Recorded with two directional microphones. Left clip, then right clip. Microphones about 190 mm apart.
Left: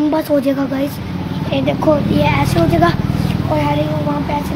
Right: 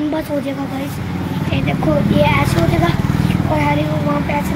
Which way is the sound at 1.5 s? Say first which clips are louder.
Left 4 dB; 25° left (ahead or behind).